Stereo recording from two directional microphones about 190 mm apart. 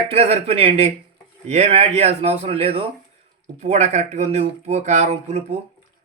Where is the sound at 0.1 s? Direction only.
35° right (ahead or behind).